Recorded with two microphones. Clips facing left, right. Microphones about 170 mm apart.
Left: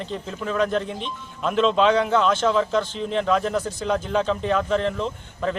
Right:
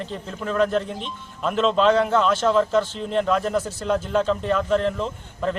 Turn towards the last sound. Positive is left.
turn(degrees=0)  # may be behind; listen again after turning